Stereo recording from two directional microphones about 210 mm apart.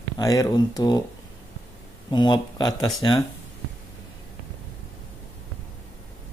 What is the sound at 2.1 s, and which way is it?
Speech, 20° left (ahead or behind).